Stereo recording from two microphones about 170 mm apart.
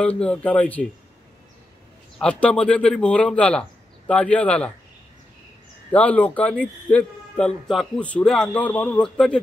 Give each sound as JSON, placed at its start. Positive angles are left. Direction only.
{"t": 0.0, "sound": "a man's voice", "side_deg": 5}
{"t": 2.1, "sound": "a man's voice", "side_deg": 5}
{"t": 5.9, "sound": "a man's voice", "side_deg": 10}